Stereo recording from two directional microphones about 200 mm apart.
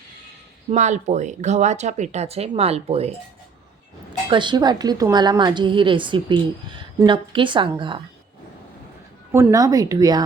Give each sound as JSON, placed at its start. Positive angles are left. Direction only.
{"t": 0.7, "sound": "speech", "side_deg": -35}
{"t": 4.3, "sound": "a woman's voice", "side_deg": -25}
{"t": 9.3, "sound": "speech", "side_deg": -15}